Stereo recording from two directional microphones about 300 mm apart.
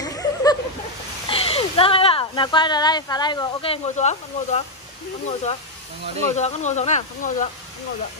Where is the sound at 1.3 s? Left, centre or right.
Centre.